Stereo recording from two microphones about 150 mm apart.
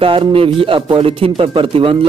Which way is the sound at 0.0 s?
35° right (ahead or behind).